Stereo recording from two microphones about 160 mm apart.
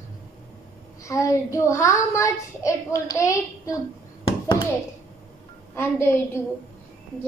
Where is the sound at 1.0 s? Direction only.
20° left (ahead or behind).